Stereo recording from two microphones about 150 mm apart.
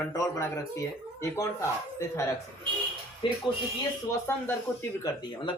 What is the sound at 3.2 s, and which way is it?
Speech, 35° left (ahead or behind).